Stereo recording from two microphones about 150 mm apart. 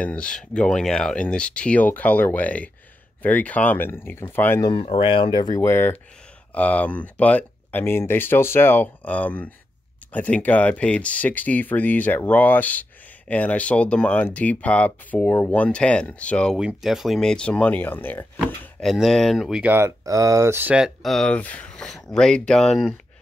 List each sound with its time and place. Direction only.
0.0 s speech: 5° left (ahead or behind)
4.8 s speech: 35° left (ahead or behind); by 16.5 s 5° left (ahead or behind)
16.5 s speech: 5° right (ahead or behind)
18.9 s speech: centre (ahead or behind)